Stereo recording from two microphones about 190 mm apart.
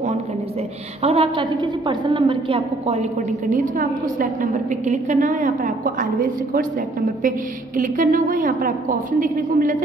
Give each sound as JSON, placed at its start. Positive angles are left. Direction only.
{"t": 1.0, "sound": "a woman's voice", "side_deg": -30}
{"t": 7.7, "sound": "a woman's voice", "side_deg": -45}